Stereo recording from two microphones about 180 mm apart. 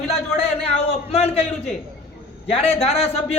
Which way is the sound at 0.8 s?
35° left (ahead or behind).